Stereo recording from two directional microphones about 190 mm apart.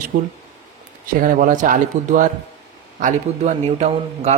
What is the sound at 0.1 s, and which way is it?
A man's voice, 50° right (ahead or behind).